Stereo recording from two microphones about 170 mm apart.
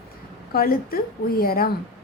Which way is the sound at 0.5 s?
60° left (ahead or behind).